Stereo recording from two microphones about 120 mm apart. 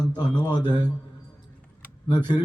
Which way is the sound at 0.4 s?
35° left (ahead or behind).